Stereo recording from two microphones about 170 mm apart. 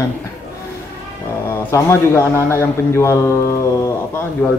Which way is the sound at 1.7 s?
15° left (ahead or behind).